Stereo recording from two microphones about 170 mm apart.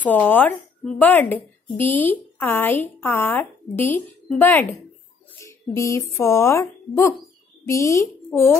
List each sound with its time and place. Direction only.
0.0 s a woman's voice: 10° left (ahead or behind)